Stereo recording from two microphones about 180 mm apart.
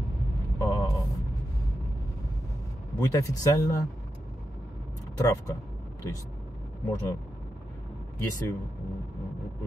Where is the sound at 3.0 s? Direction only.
20° left (ahead or behind).